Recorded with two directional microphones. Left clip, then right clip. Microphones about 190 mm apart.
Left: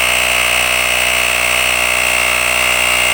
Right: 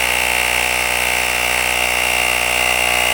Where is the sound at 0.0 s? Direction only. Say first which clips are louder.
Left 3 dB; 15° left (ahead or behind).